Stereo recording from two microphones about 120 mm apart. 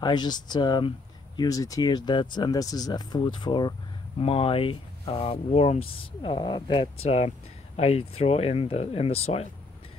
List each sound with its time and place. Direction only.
0.0 s speech: 35° left (ahead or behind)
4.2 s speech: 55° left (ahead or behind)
6.2 s speech: 40° left (ahead or behind); by 9.5 s 60° left (ahead or behind)